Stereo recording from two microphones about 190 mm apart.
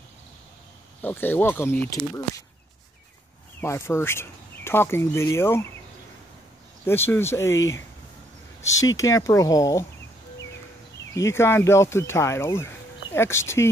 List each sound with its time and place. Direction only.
1.0 s speech: 10° left (ahead or behind)
3.6 s speech: 15° left (ahead or behind)
6.9 s speech: 10° left (ahead or behind)
11.1 s speech: 15° left (ahead or behind)